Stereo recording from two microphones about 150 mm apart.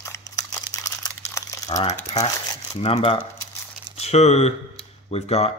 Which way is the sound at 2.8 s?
35° left (ahead or behind).